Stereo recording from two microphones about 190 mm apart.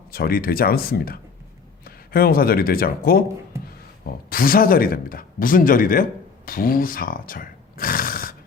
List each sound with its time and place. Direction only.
0.1 s speech: 50° left (ahead or behind)